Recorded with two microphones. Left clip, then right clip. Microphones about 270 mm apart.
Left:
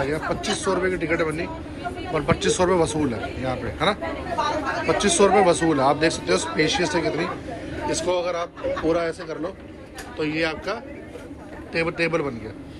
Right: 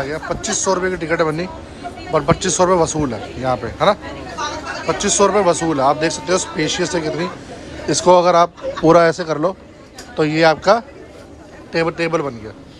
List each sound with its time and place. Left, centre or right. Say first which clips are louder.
0.0 s a man's voice: right 2 dB; centre